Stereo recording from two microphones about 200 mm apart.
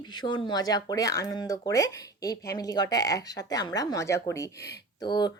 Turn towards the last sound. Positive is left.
turn(degrees=20)  # may be behind; listen again after turning